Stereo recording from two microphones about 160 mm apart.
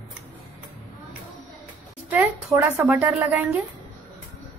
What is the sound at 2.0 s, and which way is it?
Speech, 15° right (ahead or behind).